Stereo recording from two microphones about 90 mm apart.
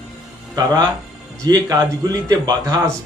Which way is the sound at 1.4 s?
55° right (ahead or behind).